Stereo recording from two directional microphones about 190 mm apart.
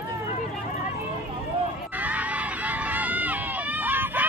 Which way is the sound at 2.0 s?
10° right (ahead or behind).